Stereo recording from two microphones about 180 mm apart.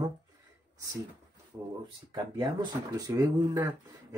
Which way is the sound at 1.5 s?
25° right (ahead or behind).